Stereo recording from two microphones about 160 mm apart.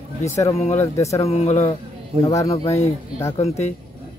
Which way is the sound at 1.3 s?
45° left (ahead or behind).